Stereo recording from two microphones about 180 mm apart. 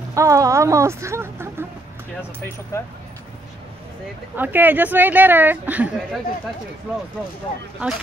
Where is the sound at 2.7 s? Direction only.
15° left (ahead or behind).